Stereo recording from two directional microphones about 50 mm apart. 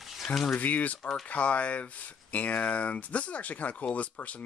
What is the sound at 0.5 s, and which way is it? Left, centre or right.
Speech, left.